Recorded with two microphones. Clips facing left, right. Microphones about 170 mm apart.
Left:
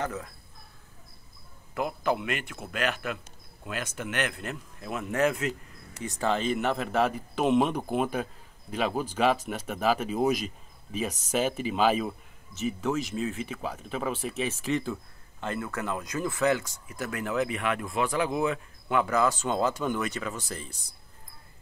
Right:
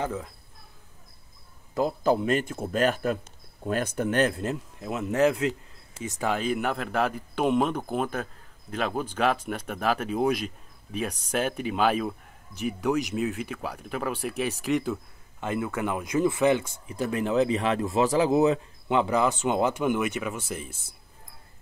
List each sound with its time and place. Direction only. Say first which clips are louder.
0.0 s speech: right 2 dB; 10° right (ahead or behind)
1.8 s speech: right 5 dB; 35° right (ahead or behind)
6.2 s a man's voice: even; 5° right (ahead or behind)
13.2 s a man's voice: right 2 dB; centre (ahead or behind)
15.4 s speech: right 4 dB; 10° right (ahead or behind)